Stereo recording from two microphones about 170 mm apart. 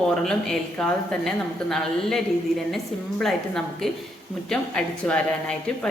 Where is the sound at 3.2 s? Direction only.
Centre (ahead or behind).